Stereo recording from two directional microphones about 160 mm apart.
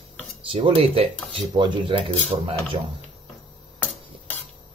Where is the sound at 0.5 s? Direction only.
35° right (ahead or behind).